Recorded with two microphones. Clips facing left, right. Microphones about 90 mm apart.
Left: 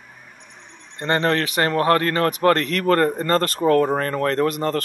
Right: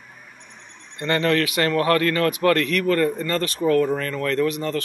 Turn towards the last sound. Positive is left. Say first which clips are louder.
# left 2 dB
turn(degrees=45)  # may be behind; listen again after turning